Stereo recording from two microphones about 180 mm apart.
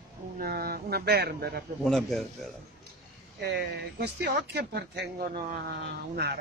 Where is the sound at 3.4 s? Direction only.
65° right (ahead or behind).